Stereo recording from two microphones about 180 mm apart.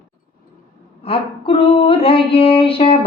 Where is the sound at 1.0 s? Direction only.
30° left (ahead or behind).